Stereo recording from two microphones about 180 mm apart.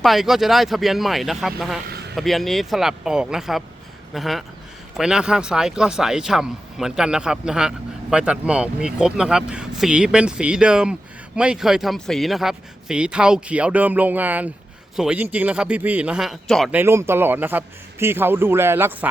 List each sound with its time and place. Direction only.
0.0 s a man's voice: centre (ahead or behind)
1.9 s a sound: 65° right (ahead or behind)
2.1 s a man's voice: centre (ahead or behind)
16.7 s speech: 15° right (ahead or behind)